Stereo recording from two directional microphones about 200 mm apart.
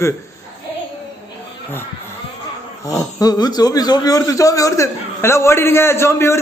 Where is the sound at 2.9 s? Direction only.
15° left (ahead or behind).